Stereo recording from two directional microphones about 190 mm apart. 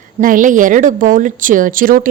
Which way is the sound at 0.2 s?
45° right (ahead or behind).